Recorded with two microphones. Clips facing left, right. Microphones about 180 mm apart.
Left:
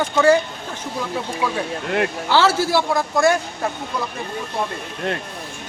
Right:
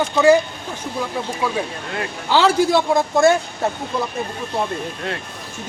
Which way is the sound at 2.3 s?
15° right (ahead or behind).